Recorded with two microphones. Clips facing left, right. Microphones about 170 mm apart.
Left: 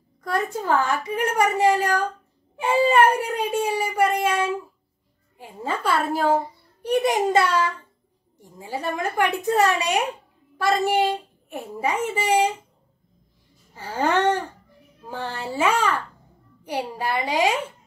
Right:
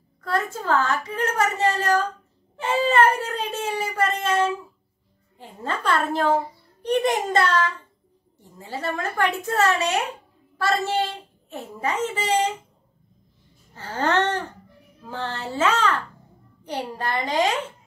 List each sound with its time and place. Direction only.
0.2 s a child's voice: 15° left (ahead or behind)
13.7 s a child's voice: 10° left (ahead or behind)